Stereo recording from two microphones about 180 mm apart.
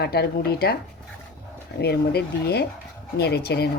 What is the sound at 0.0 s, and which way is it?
Speech, 60° left (ahead or behind).